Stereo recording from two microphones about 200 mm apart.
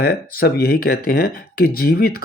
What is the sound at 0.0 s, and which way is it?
Speech, 50° left (ahead or behind).